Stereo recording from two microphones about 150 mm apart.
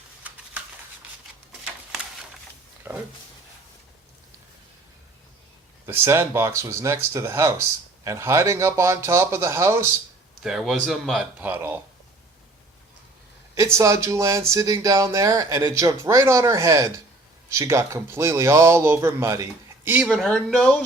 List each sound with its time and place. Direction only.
2.8 s a sound: 15° right (ahead or behind)
5.8 s speech: 15° right (ahead or behind)
10.4 s a man's voice: centre (ahead or behind)
11.3 s speech: 10° right (ahead or behind)
13.7 s speech: 20° right (ahead or behind)
20.0 s a man's voice: centre (ahead or behind)